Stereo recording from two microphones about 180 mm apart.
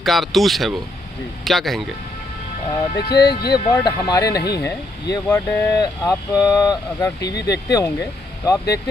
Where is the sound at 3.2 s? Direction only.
65° left (ahead or behind).